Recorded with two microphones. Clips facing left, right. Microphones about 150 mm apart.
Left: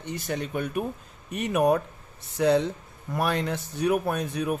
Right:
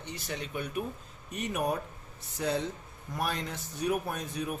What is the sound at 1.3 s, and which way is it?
Speech, 70° left (ahead or behind).